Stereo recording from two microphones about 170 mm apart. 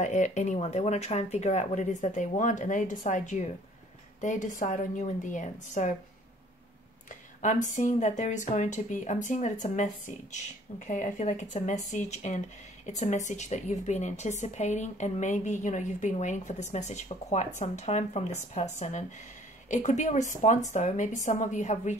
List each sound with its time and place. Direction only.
0.0 s speech: 45° left (ahead or behind)
7.4 s speech: 45° left (ahead or behind)